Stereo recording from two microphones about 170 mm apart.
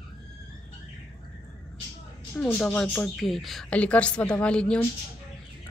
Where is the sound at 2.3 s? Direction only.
5° left (ahead or behind).